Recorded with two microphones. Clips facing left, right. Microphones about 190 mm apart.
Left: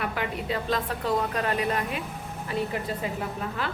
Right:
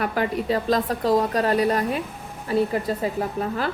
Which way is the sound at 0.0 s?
40° right (ahead or behind).